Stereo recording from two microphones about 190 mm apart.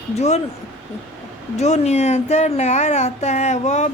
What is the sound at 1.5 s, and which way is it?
Speech, 35° left (ahead or behind).